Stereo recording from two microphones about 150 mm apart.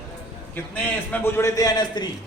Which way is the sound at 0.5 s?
15° left (ahead or behind).